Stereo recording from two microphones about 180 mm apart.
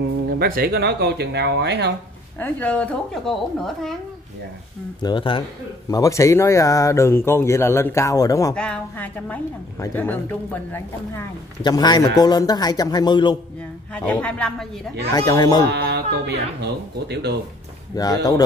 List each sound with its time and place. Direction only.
0.3 s speech: 55° right (ahead or behind)
2.3 s speech: 10° left (ahead or behind)
5.0 s a man's voice: 25° left (ahead or behind)
8.5 s speech: 5° left (ahead or behind)
11.6 s a man's voice: 25° left (ahead or behind)
13.9 s speech: 5° left (ahead or behind)
15.1 s a man's voice: 20° left (ahead or behind)
15.6 s speech: 65° right (ahead or behind)
17.9 s a man's voice: 20° left (ahead or behind)